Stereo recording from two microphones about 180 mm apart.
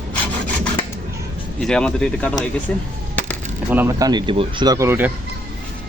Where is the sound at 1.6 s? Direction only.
5° left (ahead or behind).